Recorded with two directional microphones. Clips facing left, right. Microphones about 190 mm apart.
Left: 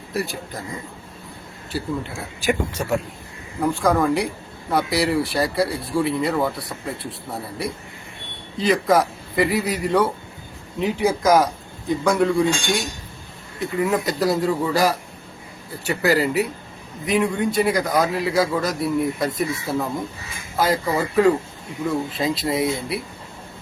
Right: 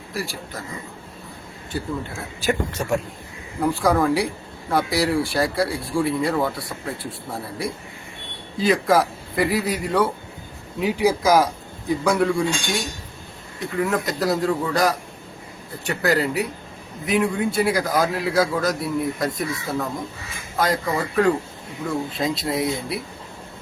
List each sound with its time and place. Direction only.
0.1 s a man's voice: 20° left (ahead or behind)
2.4 s a man's voice: 10° left (ahead or behind)
20.6 s speech: 5° left (ahead or behind)